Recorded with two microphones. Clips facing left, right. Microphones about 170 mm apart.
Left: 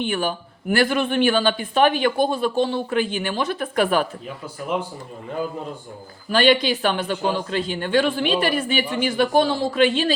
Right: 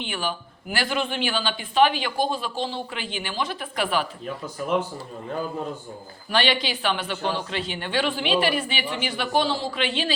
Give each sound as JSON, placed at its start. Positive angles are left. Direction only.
{"t": 0.0, "sound": "speech", "side_deg": 50}
{"t": 6.3, "sound": "speech", "side_deg": 50}